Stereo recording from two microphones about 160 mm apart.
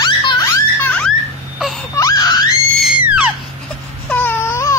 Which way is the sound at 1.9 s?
20° left (ahead or behind).